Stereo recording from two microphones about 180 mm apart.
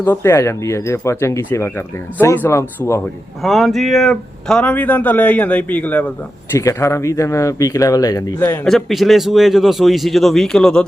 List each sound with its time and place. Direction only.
0.0 s speech: 15° left (ahead or behind)
3.4 s speech: centre (ahead or behind); by 8.5 s 15° left (ahead or behind)
8.6 s a man's voice: centre (ahead or behind)